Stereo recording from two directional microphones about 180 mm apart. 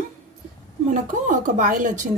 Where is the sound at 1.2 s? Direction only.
45° right (ahead or behind).